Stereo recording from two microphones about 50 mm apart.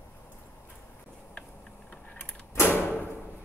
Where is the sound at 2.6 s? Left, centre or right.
Left.